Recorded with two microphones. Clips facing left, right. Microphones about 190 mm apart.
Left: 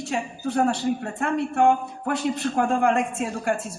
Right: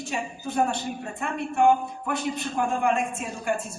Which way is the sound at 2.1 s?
75° left (ahead or behind).